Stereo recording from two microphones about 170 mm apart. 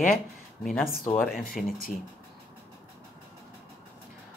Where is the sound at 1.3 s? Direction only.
60° left (ahead or behind).